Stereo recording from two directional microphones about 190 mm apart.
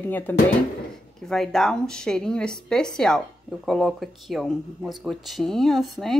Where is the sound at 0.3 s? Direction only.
10° left (ahead or behind).